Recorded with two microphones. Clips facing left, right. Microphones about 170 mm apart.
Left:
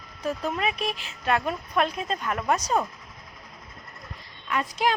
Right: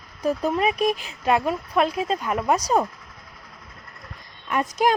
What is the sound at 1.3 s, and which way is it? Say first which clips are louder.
Speech: right 4 dB; 10° right (ahead or behind).